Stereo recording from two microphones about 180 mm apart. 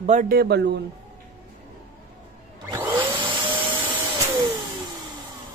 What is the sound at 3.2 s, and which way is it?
Vacuum cleaner, 25° right (ahead or behind).